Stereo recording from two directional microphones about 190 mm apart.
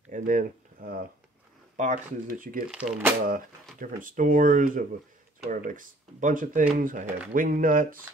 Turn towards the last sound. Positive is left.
turn(degrees=-45)  # may be behind; listen again after turning